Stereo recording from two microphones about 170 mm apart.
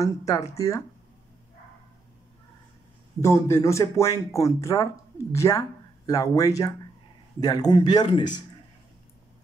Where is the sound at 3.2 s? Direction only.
15° left (ahead or behind).